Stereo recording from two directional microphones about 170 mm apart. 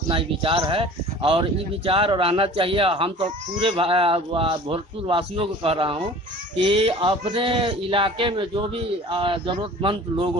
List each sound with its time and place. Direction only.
0.1 s speech: 30° right (ahead or behind)